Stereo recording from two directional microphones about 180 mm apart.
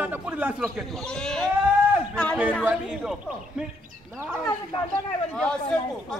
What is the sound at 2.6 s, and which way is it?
A man's voice, 5° right (ahead or behind).